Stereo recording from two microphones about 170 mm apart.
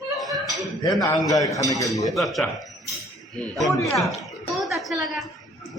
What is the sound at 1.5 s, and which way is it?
Speech, 20° left (ahead or behind).